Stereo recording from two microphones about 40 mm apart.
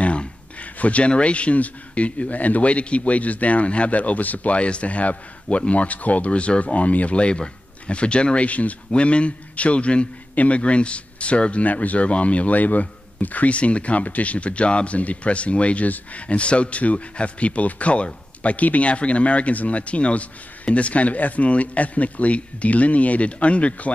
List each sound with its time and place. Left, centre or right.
0.0 s a man's voice: left